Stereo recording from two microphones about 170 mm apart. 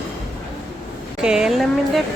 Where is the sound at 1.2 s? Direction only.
5° right (ahead or behind).